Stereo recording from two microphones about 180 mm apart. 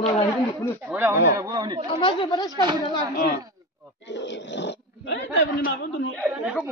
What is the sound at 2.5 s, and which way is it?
Speech, 25° right (ahead or behind).